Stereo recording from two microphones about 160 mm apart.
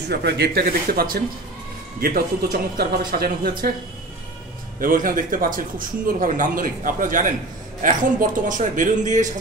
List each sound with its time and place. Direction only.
0.1 s a man's voice: 90° right; by 3.7 s 70° right (ahead or behind)
4.7 s a man's voice: 60° right (ahead or behind)